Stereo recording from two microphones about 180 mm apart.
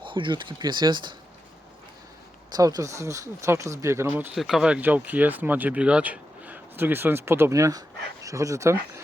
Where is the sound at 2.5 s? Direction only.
20° right (ahead or behind).